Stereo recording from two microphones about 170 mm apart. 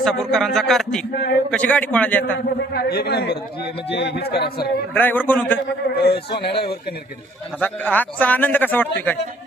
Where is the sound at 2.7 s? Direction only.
70° left (ahead or behind).